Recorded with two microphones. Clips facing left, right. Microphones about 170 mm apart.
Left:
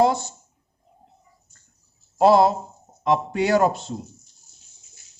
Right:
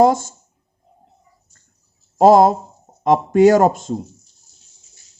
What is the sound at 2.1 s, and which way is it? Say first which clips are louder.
Speech: right 5 dB; 45° right (ahead or behind).